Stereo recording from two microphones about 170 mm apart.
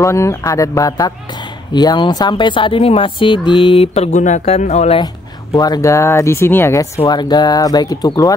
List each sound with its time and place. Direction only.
0.0 s speech: 15° left (ahead or behind); by 5.0 s 40° left (ahead or behind)
5.6 s speech: 20° left (ahead or behind)